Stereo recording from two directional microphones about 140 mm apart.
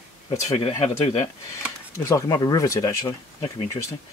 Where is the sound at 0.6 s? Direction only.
40° left (ahead or behind).